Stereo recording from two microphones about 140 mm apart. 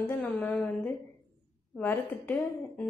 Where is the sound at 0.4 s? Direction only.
10° left (ahead or behind).